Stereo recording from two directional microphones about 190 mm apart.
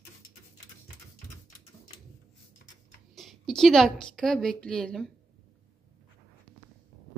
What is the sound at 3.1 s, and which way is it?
A woman's voice, centre (ahead or behind).